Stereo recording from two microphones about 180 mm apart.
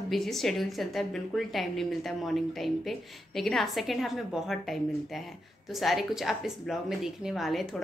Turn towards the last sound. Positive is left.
turn(degrees=0)  # may be behind; listen again after turning